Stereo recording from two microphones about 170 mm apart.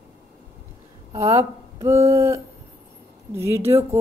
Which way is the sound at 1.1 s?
20° right (ahead or behind).